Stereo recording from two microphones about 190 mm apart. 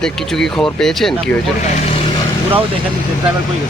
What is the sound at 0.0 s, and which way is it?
Speech, 5° left (ahead or behind).